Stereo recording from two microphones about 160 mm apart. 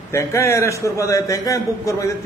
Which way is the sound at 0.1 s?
20° left (ahead or behind).